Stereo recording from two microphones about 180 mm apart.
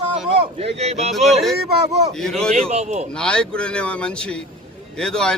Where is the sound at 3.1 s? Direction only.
5° left (ahead or behind).